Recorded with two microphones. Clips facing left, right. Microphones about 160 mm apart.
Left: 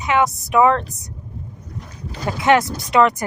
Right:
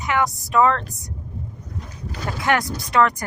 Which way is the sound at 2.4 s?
20° left (ahead or behind).